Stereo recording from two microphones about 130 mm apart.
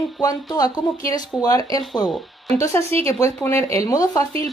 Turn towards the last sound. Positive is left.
turn(degrees=25)  # may be behind; listen again after turning